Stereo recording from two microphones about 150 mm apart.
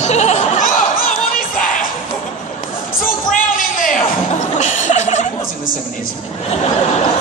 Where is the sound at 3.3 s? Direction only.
60° left (ahead or behind).